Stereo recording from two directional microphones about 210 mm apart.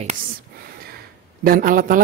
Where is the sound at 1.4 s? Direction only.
40° right (ahead or behind).